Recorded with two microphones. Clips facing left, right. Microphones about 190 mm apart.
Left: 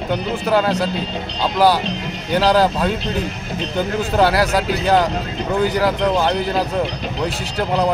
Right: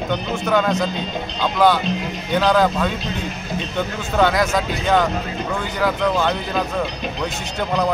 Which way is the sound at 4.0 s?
35° left (ahead or behind).